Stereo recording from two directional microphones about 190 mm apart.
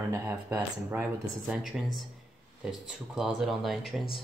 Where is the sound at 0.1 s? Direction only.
15° right (ahead or behind).